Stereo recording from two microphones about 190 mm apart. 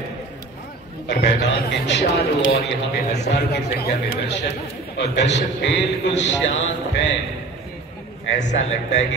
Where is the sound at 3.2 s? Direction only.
60° left (ahead or behind).